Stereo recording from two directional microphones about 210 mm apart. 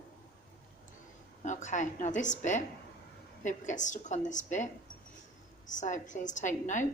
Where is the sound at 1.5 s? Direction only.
35° left (ahead or behind).